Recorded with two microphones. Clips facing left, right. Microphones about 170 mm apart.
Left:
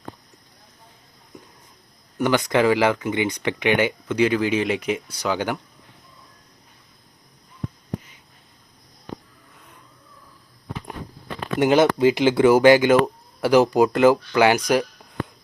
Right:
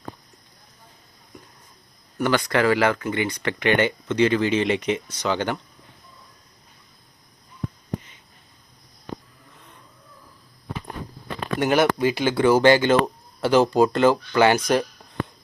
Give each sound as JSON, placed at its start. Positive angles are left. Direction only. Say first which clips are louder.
{"t": 2.1, "sound": "speech", "louder": "left 2 dB", "side_deg": 20}
{"t": 11.6, "sound": "speech", "louder": "left 4 dB", "side_deg": 20}